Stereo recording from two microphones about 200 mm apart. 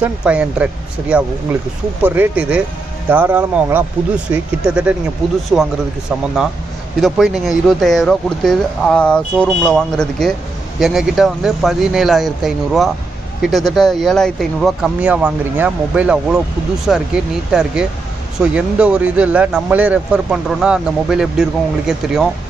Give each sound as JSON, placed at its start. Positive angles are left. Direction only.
{"t": 0.0, "sound": "speech", "side_deg": -5}